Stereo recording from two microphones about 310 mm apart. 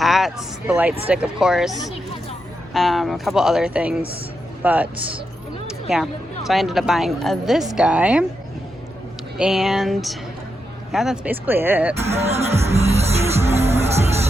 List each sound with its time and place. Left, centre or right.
0.0 s a woman's voice: centre
5.9 s a woman's voice: centre
9.4 s a woman's voice: centre
11.9 s music: centre